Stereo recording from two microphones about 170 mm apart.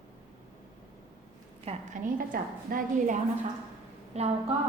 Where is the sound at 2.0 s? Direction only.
55° right (ahead or behind).